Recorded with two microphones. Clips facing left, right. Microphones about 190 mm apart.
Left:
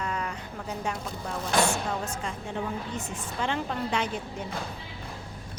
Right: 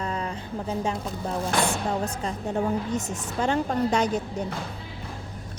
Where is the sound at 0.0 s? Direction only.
30° right (ahead or behind).